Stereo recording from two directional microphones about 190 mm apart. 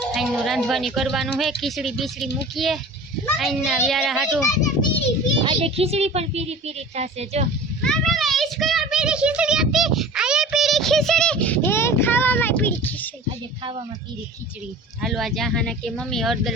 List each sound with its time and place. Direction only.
0.1 s a woman's voice: centre (ahead or behind)
5.4 s speech: 30° right (ahead or behind)
7.8 s a sound: 5° left (ahead or behind)
15.0 s a woman's voice: centre (ahead or behind)